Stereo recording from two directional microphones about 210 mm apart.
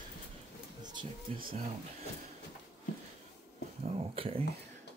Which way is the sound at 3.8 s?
25° right (ahead or behind).